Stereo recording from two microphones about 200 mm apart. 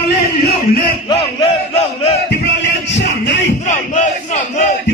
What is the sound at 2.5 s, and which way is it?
Music, 60° left (ahead or behind).